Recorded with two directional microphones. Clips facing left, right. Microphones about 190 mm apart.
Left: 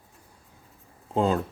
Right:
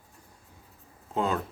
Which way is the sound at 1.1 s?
35° left (ahead or behind).